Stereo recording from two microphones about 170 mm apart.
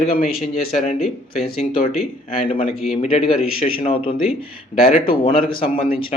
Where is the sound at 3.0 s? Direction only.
35° left (ahead or behind).